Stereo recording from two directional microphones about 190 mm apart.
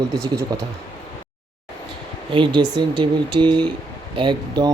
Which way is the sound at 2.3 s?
25° right (ahead or behind).